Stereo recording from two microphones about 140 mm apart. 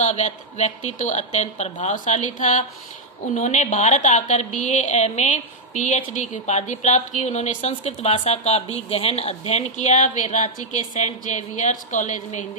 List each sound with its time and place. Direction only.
0.0 s speech: 55° left (ahead or behind)